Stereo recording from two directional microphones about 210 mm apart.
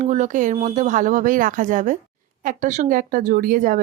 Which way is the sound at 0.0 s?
35° right (ahead or behind).